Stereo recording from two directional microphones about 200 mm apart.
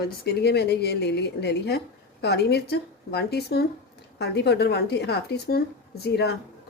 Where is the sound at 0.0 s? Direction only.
55° left (ahead or behind).